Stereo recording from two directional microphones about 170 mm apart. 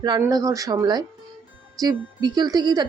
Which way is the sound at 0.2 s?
20° right (ahead or behind).